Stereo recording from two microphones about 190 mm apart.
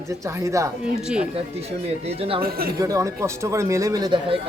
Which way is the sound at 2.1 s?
30° right (ahead or behind).